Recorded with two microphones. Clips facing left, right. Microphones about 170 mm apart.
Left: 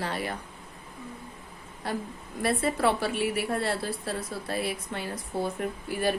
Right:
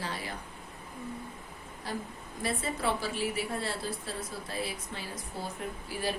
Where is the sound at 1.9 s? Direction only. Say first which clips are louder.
Left 5 dB; 60° left (ahead or behind).